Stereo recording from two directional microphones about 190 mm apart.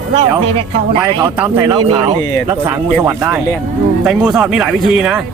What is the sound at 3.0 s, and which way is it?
A man's voice, 10° right (ahead or behind).